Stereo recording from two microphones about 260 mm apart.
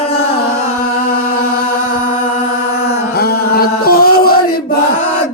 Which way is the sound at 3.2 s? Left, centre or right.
Left.